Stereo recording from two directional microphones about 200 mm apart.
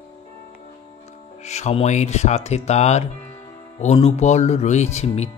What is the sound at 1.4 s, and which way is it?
Speech, 35° left (ahead or behind).